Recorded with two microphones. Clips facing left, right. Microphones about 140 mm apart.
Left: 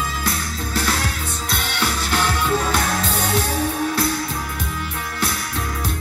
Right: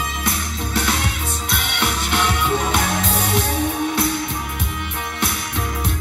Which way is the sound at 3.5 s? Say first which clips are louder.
Right 1 dB; 25° right (ahead or behind).